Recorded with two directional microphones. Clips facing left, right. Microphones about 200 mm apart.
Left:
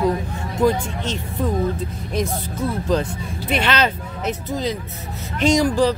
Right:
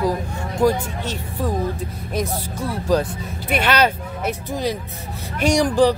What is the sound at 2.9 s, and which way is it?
Speech, 10° right (ahead or behind).